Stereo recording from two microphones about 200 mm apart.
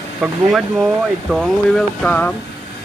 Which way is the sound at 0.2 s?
Centre (ahead or behind).